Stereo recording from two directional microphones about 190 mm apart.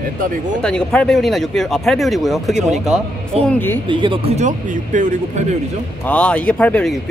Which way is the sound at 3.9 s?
25° right (ahead or behind).